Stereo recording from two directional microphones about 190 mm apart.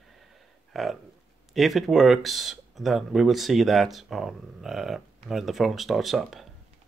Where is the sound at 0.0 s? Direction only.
Centre (ahead or behind).